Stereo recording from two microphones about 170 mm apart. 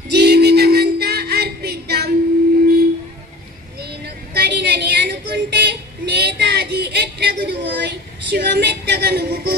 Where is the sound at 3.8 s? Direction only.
75° right (ahead or behind).